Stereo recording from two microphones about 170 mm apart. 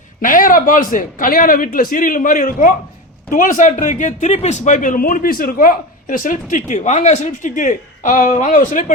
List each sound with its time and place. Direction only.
0.2 s a man's voice: 55° left (ahead or behind)